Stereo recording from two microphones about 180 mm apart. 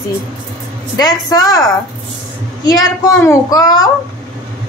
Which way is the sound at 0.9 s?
20° left (ahead or behind).